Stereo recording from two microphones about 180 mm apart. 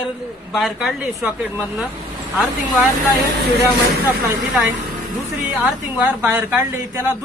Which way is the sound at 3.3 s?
60° right (ahead or behind).